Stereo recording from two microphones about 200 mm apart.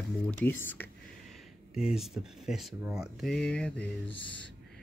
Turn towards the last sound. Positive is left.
turn(degrees=25)  # may be behind; listen again after turning